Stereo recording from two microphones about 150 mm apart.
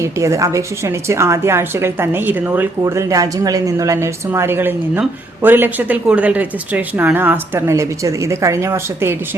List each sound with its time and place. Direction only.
0.0 s a woman's voice: 20° right (ahead or behind)